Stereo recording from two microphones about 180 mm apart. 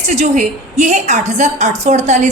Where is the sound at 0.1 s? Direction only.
40° right (ahead or behind).